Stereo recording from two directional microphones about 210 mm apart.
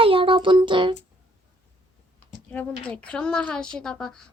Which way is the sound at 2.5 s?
5° left (ahead or behind).